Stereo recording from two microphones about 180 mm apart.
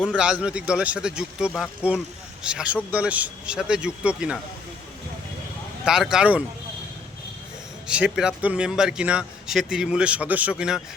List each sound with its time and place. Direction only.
0.2 s speech: 5° right (ahead or behind)
5.8 s speech: 5° right (ahead or behind)
7.9 s speech: 5° right (ahead or behind)